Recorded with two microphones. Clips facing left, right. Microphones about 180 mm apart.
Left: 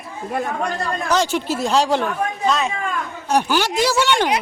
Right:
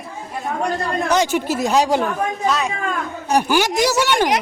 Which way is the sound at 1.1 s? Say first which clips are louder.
Right 1 dB; 10° right (ahead or behind).